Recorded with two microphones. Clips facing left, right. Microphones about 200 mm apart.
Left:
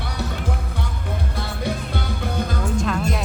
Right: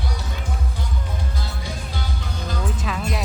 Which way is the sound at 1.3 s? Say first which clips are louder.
Left 6 dB; 60° left (ahead or behind).